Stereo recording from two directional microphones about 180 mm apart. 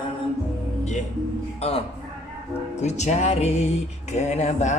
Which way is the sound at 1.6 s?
35° left (ahead or behind).